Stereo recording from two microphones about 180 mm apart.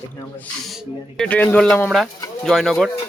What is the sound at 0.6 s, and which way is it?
Speech, centre (ahead or behind).